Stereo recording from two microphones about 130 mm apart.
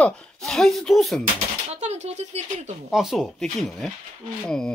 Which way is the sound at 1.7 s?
60° right (ahead or behind).